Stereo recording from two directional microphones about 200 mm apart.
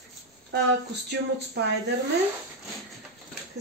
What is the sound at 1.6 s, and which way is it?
Speech, 55° right (ahead or behind).